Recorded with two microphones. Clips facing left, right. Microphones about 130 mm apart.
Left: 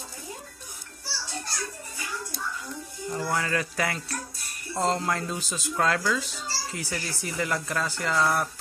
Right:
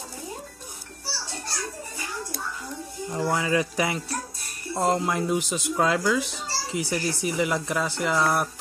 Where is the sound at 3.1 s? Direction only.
20° right (ahead or behind).